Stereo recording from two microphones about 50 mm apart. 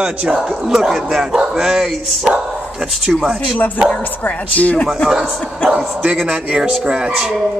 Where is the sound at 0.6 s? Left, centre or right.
Centre.